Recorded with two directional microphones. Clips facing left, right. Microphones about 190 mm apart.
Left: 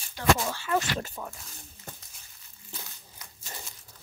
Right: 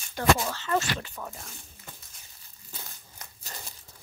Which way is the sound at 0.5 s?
10° left (ahead or behind).